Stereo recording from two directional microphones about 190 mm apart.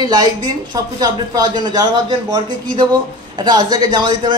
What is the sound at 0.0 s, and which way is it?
A man's voice, 20° right (ahead or behind).